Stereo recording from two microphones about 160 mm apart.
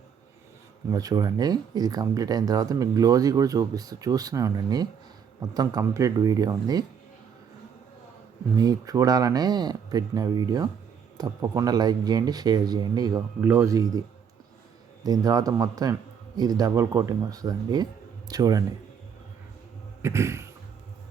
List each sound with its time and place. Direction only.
0.9 s speech: 25° right (ahead or behind)
8.5 s speech: 25° right (ahead or behind)
13.4 s speech: 15° right (ahead or behind)
15.0 s speech: 25° right (ahead or behind)
20.0 s a sound: 15° right (ahead or behind)